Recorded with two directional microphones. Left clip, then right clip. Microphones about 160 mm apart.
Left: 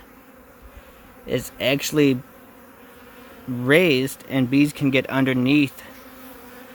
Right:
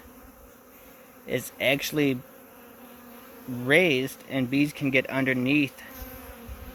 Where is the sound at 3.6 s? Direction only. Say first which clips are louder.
Left 4 dB; 45° left (ahead or behind).